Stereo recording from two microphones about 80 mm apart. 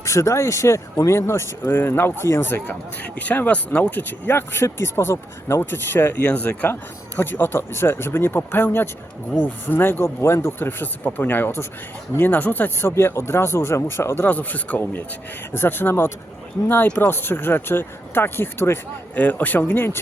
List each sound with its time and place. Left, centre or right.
0.0 s speech: left